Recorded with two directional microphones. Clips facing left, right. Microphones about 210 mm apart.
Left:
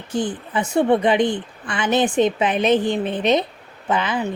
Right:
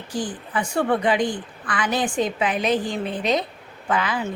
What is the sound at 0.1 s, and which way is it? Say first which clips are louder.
A woman's voice: left 4 dB; 25° left (ahead or behind).